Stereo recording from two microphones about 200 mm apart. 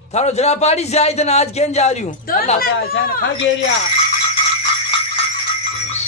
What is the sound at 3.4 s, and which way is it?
Speech, 65° left (ahead or behind).